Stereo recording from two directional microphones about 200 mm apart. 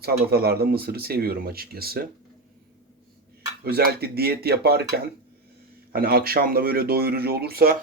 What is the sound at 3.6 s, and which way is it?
Speech, 50° right (ahead or behind).